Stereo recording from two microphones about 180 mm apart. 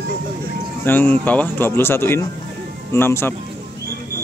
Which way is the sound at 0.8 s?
10° left (ahead or behind).